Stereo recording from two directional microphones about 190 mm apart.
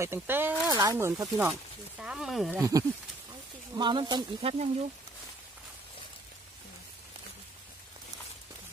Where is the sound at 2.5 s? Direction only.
15° right (ahead or behind); by 4.9 s 35° right (ahead or behind).